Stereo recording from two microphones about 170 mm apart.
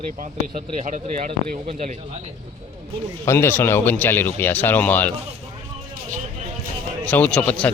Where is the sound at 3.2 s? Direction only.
15° left (ahead or behind).